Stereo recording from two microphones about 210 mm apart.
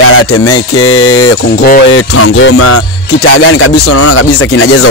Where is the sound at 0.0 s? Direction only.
80° left.